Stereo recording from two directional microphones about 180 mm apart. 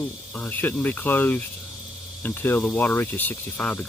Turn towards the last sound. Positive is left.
turn(degrees=10)  # may be behind; listen again after turning